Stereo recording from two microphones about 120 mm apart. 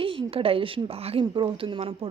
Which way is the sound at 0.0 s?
45° right (ahead or behind).